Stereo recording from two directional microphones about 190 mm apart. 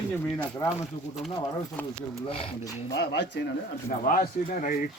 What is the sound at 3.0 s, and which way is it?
Speech, 60° left (ahead or behind).